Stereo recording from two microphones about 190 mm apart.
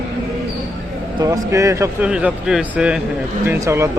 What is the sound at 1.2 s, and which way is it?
Speech, 15° right (ahead or behind).